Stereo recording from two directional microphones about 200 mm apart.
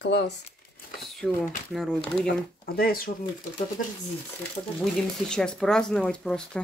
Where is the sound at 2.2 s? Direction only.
50° left (ahead or behind).